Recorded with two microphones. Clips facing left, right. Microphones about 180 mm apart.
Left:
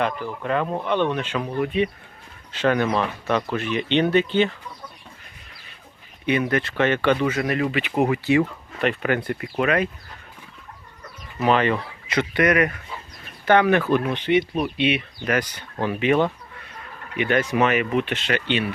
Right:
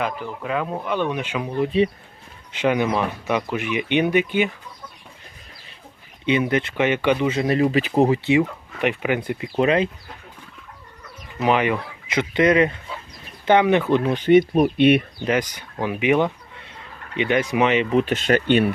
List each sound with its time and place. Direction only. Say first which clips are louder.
0.0 s speech: left 1 dB; 5° right (ahead or behind)
1.6 s speech: right 5 dB; 30° right (ahead or behind)
2.5 s speech: even; 15° right (ahead or behind)
6.2 s speech: right 2 dB; 20° right (ahead or behind)
7.3 s speech: right 3 dB; 25° right (ahead or behind)
9.6 s speech: right 3 dB; 25° right (ahead or behind)
11.3 s speech: even; 15° right (ahead or behind)
14.1 s speech: right 6 dB; 45° right (ahead or behind)
15.2 s speech: right 2 dB; 20° right (ahead or behind)
17.9 s speech: right 5 dB; 40° right (ahead or behind)